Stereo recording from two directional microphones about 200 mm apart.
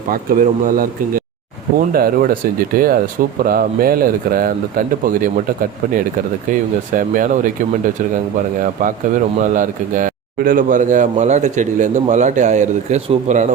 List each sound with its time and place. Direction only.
0.1 s speech: 40° right (ahead or behind)
6.5 s speech: 40° right (ahead or behind)
8.6 s speech: 40° right (ahead or behind)